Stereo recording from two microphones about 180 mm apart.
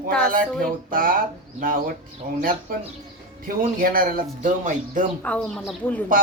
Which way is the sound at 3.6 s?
50° right (ahead or behind).